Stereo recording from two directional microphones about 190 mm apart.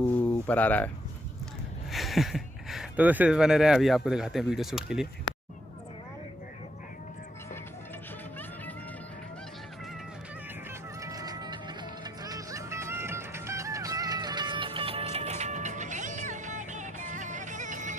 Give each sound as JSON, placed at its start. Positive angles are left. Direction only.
{"t": 0.5, "sound": "speech", "side_deg": 10}
{"t": 11.0, "sound": "music", "side_deg": -20}